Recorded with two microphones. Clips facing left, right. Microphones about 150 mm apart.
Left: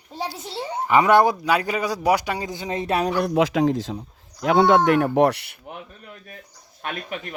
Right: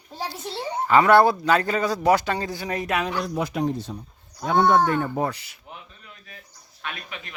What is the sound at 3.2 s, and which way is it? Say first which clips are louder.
Speech: left 6 dB; 75° left (ahead or behind).